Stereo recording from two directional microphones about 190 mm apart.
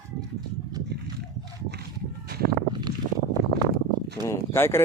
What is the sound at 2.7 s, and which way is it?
Vehicle, 25° right (ahead or behind).